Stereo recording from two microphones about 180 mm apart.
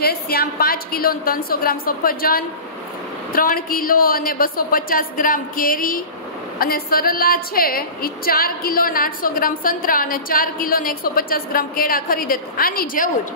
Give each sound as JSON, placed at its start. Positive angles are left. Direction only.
{"t": 0.0, "sound": "a woman's voice", "side_deg": 60}